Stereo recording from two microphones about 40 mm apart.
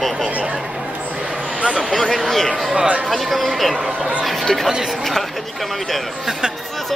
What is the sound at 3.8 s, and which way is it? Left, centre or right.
Speech, right.